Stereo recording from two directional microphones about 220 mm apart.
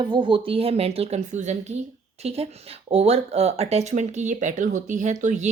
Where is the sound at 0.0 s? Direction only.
20° right (ahead or behind).